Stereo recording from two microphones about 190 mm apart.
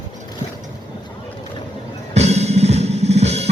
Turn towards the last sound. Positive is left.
turn(degrees=-35)  # may be behind; listen again after turning